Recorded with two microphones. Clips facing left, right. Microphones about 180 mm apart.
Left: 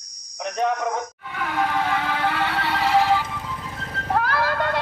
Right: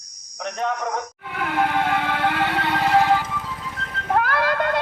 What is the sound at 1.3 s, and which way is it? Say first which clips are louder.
Music: right 2 dB; 55° right (ahead or behind).